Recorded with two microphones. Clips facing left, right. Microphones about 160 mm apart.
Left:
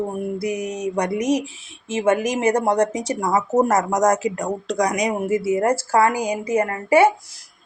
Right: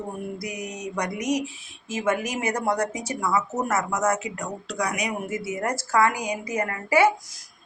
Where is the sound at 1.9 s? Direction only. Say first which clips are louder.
Left 6 dB; 25° left (ahead or behind).